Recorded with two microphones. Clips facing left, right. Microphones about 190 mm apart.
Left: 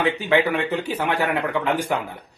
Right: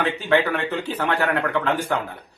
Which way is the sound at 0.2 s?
15° left (ahead or behind).